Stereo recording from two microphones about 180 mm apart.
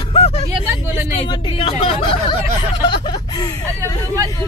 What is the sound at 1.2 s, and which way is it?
Speech, 30° left (ahead or behind).